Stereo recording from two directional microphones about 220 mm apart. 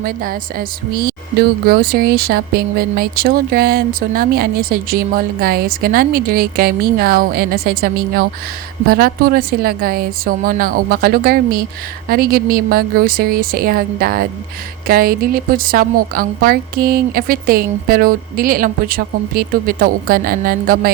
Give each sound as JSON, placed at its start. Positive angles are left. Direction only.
{"t": 0.0, "sound": "a woman's voice", "side_deg": -40}